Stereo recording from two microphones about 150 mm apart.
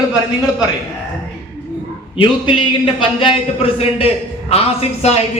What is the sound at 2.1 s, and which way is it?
A man's voice, 35° left (ahead or behind).